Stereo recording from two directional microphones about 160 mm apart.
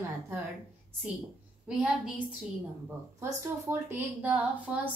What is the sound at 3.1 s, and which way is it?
A woman's voice, 20° right (ahead or behind).